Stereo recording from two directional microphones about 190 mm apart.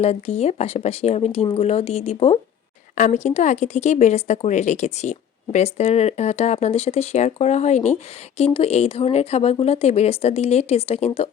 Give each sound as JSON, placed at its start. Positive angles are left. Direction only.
{"t": 0.0, "sound": "speech", "side_deg": 35}